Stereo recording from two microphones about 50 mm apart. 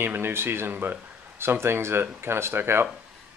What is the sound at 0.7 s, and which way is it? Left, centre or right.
Speech, right.